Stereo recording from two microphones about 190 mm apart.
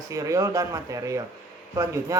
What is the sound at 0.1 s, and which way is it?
A man's voice, 15° right (ahead or behind).